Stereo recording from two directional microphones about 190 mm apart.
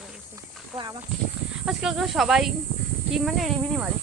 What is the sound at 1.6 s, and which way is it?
Speech, centre (ahead or behind).